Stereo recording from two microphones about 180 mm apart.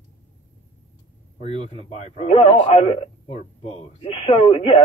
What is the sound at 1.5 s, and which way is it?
Speech, 30° right (ahead or behind).